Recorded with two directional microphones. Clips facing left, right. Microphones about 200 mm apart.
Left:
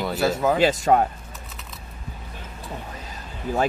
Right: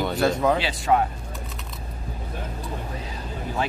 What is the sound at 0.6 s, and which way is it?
Speech, 45° left (ahead or behind).